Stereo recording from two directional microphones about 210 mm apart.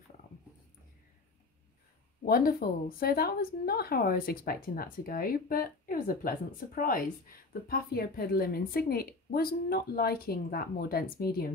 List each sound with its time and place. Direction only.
2.2 s a woman's voice: 45° left (ahead or behind)